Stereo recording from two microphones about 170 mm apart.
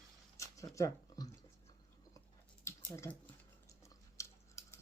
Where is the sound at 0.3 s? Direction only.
20° left (ahead or behind).